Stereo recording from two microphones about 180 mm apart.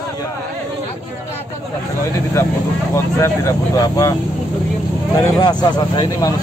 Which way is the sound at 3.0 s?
15° left (ahead or behind).